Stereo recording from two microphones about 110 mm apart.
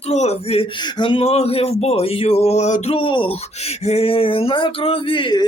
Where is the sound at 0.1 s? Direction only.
80° left.